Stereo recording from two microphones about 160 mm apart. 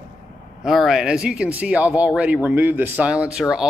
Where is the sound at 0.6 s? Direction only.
Centre (ahead or behind).